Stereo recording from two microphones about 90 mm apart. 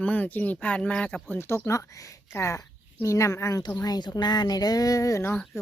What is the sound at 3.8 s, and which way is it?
Speech, 45° left (ahead or behind).